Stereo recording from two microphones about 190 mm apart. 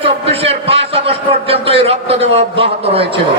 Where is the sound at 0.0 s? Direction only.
30° right (ahead or behind).